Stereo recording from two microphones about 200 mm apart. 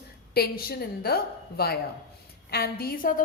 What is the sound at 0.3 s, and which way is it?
A woman's voice, 50° left (ahead or behind).